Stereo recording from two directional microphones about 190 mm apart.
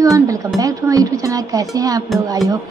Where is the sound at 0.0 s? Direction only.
15° right (ahead or behind).